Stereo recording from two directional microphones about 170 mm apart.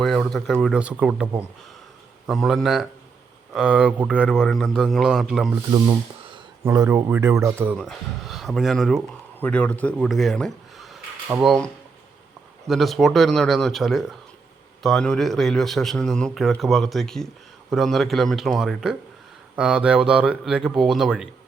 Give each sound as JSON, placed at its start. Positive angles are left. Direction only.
{"t": 0.0, "sound": "a man's voice", "side_deg": 0}
{"t": 6.7, "sound": "speech", "side_deg": -15}
{"t": 7.8, "sound": "speech", "side_deg": 0}
{"t": 12.6, "sound": "a man's voice", "side_deg": 0}